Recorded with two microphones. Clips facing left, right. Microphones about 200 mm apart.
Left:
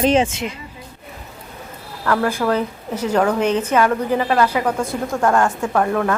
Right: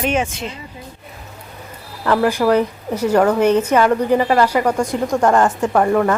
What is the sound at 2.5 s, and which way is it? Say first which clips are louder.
Speech: right 4 dB; 10° right (ahead or behind).